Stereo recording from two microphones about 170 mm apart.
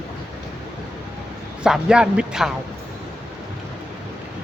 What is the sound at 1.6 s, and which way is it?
Speech, 5° right (ahead or behind).